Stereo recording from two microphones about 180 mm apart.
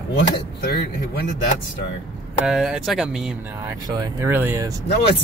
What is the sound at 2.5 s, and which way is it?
Speech, 5° right (ahead or behind).